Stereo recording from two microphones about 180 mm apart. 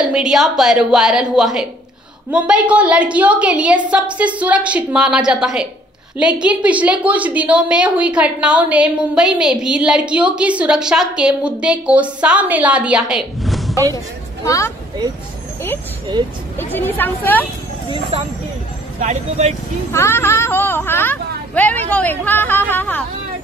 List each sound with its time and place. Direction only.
0.1 s a woman's voice: 5° right (ahead or behind)
13.9 s a man's voice: 20° left (ahead or behind)
16.5 s a woman's voice: 10° left (ahead or behind)
18.9 s speech: 40° right (ahead or behind)
19.9 s a woman's voice: 15° left (ahead or behind)